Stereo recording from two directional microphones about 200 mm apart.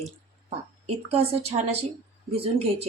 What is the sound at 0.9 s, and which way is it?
A woman's voice, 30° right (ahead or behind).